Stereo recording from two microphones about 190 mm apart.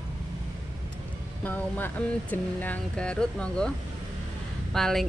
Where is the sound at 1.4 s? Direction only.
10° left (ahead or behind).